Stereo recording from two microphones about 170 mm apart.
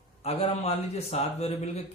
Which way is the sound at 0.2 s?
35° left (ahead or behind).